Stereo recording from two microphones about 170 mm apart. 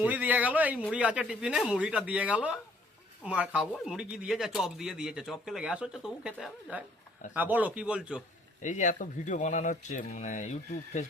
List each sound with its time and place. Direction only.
0.0 s speech: 10° right (ahead or behind)
8.6 s speech: 45° left (ahead or behind)